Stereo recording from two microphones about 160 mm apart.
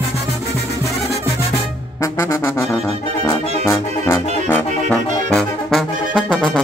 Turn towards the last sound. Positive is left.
turn(degrees=0)  # may be behind; listen again after turning